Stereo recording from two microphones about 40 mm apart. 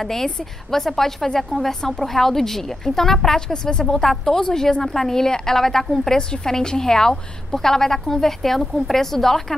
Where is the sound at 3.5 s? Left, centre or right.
Left; by 9.5 s centre.